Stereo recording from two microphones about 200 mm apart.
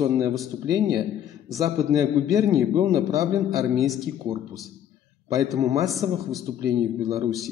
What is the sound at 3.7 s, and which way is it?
Speech, centre (ahead or behind).